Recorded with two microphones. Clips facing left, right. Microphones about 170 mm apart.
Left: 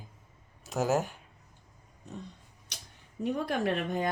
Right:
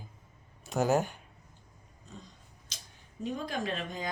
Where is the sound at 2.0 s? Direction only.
65° left (ahead or behind).